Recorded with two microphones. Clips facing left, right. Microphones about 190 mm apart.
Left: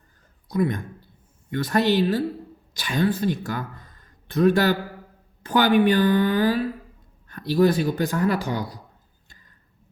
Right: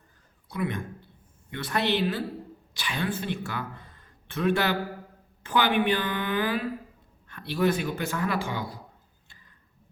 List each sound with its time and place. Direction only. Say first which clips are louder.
0.4 s speech: left 7 dB; 40° left (ahead or behind)